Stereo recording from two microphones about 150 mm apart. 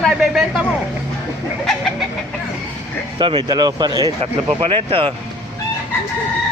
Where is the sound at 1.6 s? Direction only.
Centre (ahead or behind).